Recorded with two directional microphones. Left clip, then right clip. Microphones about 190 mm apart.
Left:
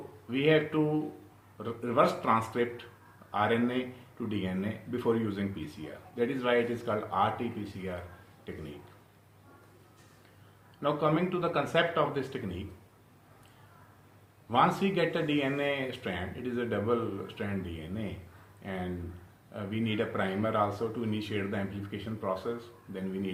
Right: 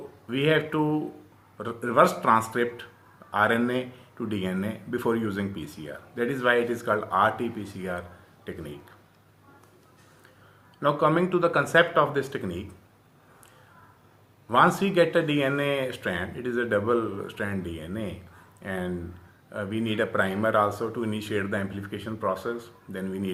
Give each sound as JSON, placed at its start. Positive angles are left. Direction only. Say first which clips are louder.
{"t": 0.3, "sound": "speech", "louder": "right 2 dB", "side_deg": -40}
{"t": 10.8, "sound": "speech", "louder": "right 6 dB", "side_deg": -40}
{"t": 14.5, "sound": "speech", "louder": "right 6 dB", "side_deg": -40}